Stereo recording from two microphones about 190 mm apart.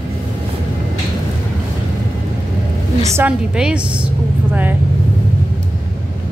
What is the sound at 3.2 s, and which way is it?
Speech, 5° right (ahead or behind).